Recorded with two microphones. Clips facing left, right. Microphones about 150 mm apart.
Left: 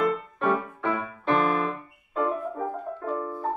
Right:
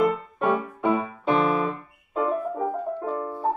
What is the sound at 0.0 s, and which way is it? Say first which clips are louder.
Music: right 2 dB; centre (ahead or behind).